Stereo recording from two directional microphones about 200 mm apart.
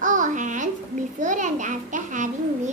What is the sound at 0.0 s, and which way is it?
Babbling, 40° right (ahead or behind).